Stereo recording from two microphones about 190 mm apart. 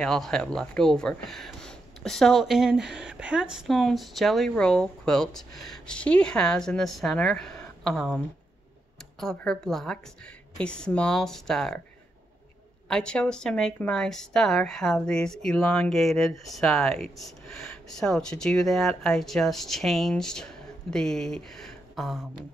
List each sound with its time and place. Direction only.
0.0 s speech: centre (ahead or behind)
9.2 s speech: 5° left (ahead or behind)
12.8 s speech: 5° left (ahead or behind)